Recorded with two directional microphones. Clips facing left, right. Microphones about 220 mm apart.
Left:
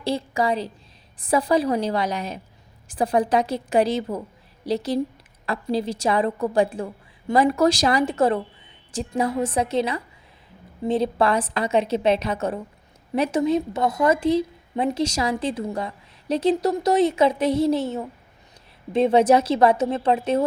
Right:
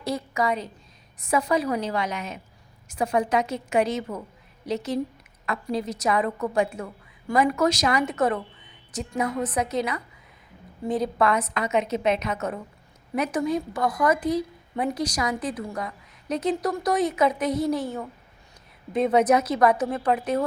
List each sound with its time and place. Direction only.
0.0 s a woman's voice: 30° left (ahead or behind)